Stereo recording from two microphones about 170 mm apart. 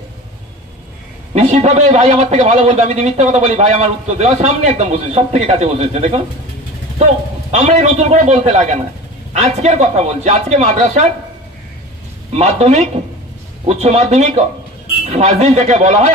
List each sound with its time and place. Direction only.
1.3 s a man's voice: 40° right (ahead or behind)
7.5 s a man's voice: 45° right (ahead or behind)
12.4 s a man's voice: 40° right (ahead or behind)